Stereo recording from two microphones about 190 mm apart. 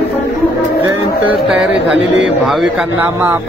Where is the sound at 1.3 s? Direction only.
Centre (ahead or behind).